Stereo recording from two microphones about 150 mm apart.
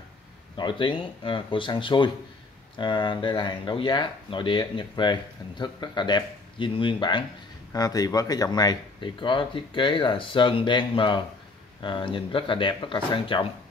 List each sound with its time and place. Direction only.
0.6 s speech: 30° left (ahead or behind)